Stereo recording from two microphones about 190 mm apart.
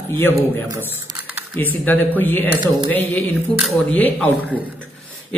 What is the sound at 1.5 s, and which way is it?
A woman's voice, 10° left (ahead or behind).